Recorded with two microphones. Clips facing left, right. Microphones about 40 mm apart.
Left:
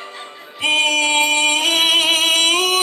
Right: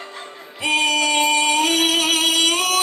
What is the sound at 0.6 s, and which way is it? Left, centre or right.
Singing, left.